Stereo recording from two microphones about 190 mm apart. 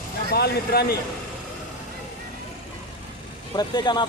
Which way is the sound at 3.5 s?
20° left (ahead or behind).